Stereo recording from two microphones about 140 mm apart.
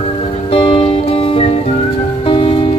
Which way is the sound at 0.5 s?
35° left (ahead or behind).